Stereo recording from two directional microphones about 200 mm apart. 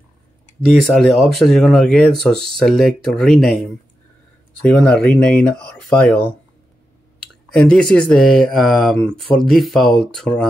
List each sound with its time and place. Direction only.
0.6 s speech: centre (ahead or behind)
7.6 s speech: 5° left (ahead or behind)